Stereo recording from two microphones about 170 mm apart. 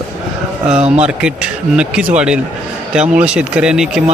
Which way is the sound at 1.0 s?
5° right (ahead or behind).